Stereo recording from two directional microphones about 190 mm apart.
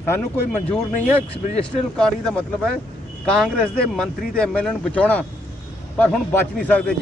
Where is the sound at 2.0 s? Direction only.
5° left (ahead or behind).